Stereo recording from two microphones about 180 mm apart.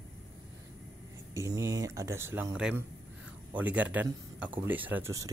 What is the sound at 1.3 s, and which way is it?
Speech, 15° right (ahead or behind).